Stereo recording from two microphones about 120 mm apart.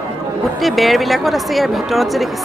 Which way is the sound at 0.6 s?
Centre (ahead or behind).